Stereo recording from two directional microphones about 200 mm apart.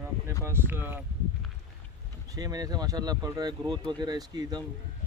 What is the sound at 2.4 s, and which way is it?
Speech, 20° right (ahead or behind).